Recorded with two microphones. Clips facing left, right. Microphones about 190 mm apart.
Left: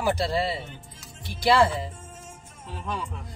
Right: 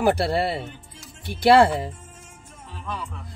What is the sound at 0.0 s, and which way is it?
Speech, 60° right (ahead or behind).